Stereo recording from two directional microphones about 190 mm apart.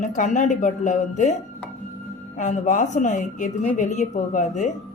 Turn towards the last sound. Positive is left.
turn(degrees=40)  # may be behind; listen again after turning